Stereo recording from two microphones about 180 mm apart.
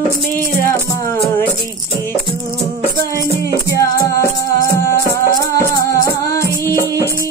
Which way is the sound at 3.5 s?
15° left (ahead or behind).